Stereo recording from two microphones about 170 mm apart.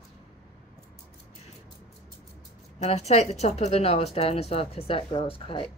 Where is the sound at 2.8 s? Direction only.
40° left (ahead or behind).